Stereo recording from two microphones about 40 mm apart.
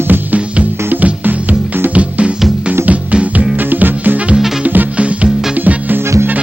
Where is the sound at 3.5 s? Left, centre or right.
Right.